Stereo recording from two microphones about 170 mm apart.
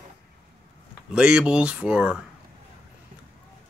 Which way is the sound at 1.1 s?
5° right (ahead or behind).